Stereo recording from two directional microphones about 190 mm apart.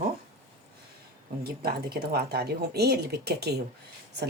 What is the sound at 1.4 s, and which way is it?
Speech, 55° right (ahead or behind).